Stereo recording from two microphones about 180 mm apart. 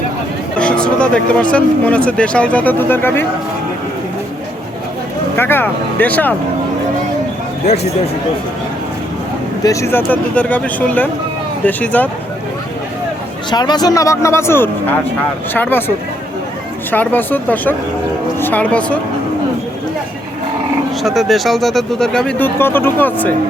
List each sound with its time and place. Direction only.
0.6 s speech: 5° left (ahead or behind)
5.4 s speech: 10° left (ahead or behind)
9.6 s speech: 15° left (ahead or behind)
13.5 s speech: 25° left (ahead or behind)
16.9 s speech: 10° left (ahead or behind)
21.0 s speech: centre (ahead or behind)